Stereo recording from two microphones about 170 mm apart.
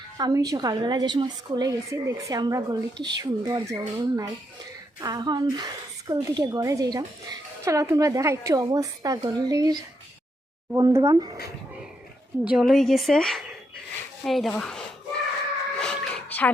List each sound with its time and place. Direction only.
0.2 s a woman's voice: 20° right (ahead or behind)
12.5 s a woman's voice: centre (ahead or behind)
15.8 s a sound: 5° left (ahead or behind)